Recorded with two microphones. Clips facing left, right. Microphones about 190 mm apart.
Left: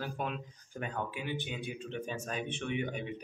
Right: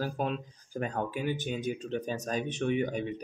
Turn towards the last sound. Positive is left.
turn(degrees=-40)  # may be behind; listen again after turning